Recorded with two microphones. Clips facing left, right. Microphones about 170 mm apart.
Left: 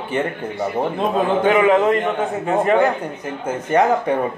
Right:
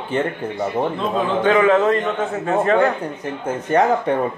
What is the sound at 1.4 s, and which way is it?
A man's voice, 15° left (ahead or behind).